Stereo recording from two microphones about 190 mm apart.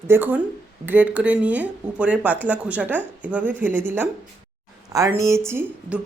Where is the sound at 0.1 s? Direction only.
10° right (ahead or behind).